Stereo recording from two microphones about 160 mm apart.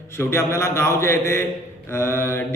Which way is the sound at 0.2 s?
15° left (ahead or behind).